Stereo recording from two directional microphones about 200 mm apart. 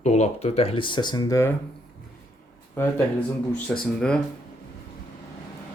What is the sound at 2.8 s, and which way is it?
Speech, 10° left (ahead or behind).